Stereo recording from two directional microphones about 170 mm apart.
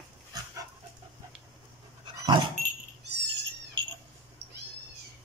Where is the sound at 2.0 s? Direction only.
25° right (ahead or behind).